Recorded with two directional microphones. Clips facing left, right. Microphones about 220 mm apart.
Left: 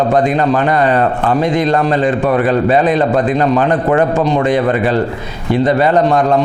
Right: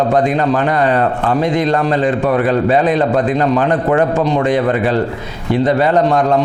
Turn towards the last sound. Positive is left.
turn(degrees=20)  # may be behind; listen again after turning